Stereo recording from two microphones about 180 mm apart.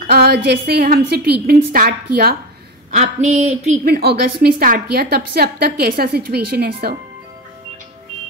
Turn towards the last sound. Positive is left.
turn(degrees=-60)  # may be behind; listen again after turning